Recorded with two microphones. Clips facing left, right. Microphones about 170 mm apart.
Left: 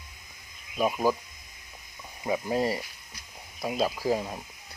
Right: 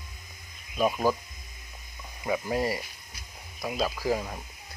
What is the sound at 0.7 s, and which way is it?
Speech, 10° left (ahead or behind).